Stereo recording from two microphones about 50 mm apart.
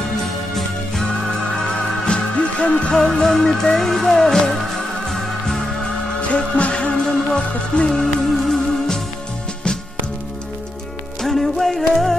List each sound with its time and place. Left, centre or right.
0.2 s music: centre
1.7 s music: centre
6.2 s music: left
7.9 s music: centre
11.1 s music: centre